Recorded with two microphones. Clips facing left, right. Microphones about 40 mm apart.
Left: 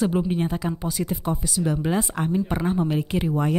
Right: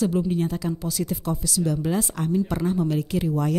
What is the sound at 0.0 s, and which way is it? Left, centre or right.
Speech, left.